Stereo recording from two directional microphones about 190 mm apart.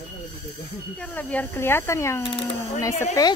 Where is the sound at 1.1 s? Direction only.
10° left (ahead or behind).